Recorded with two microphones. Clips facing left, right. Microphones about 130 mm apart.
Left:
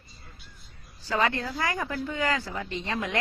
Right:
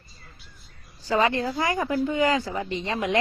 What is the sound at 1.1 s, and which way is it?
A woman's voice, 20° right (ahead or behind).